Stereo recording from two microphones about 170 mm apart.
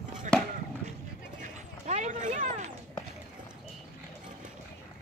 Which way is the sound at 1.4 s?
45° right (ahead or behind).